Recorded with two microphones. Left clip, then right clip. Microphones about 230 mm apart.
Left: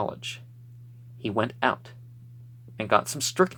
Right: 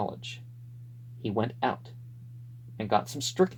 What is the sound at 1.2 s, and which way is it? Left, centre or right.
Speech, centre.